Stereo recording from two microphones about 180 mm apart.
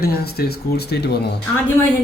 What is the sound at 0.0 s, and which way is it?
A man's voice, 60° left (ahead or behind).